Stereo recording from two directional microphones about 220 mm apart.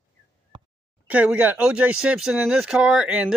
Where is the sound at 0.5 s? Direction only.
20° right (ahead or behind).